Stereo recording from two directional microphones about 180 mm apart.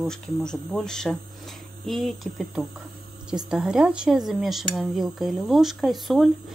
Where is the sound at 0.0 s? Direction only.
5° left (ahead or behind).